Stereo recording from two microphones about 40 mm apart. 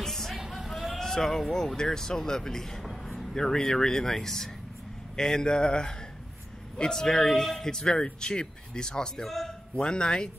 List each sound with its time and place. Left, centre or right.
0.0 s a sound: centre
1.8 s speech: centre
9.2 s a man's voice: centre
9.8 s speech: left